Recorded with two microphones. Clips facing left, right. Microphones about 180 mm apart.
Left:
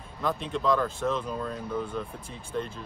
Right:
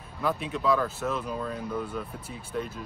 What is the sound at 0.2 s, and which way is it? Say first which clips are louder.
Speech: even; 5° right (ahead or behind).